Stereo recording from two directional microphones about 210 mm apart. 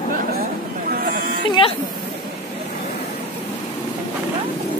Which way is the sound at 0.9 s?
45° right (ahead or behind).